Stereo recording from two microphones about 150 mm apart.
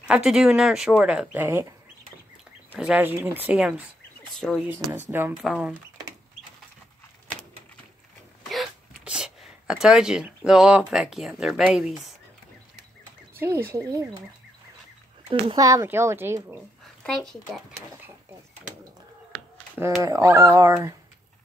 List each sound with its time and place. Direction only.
0.1 s speech: 5° right (ahead or behind)
2.8 s speech: 10° right (ahead or behind)
4.4 s speech: 5° left (ahead or behind)
8.5 s speech: 5° right (ahead or behind)
13.3 s speech: 15° right (ahead or behind)
15.2 s speech: 35° right (ahead or behind)
15.6 s speech: 20° right (ahead or behind)
17.0 s speech: 5° left (ahead or behind)
20.0 s speech: 20° right (ahead or behind)